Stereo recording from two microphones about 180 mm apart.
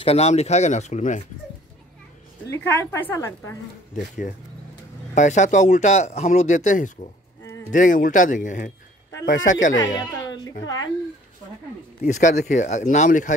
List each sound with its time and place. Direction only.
0.0 s speech: 35° left (ahead or behind)
2.5 s a woman's voice: 15° left (ahead or behind)
5.1 s speech: 40° left (ahead or behind)
9.9 s a sound: 20° left (ahead or behind)
12.0 s speech: 40° left (ahead or behind)